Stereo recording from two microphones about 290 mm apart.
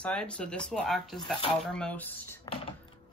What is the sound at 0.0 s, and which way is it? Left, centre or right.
Speech, centre.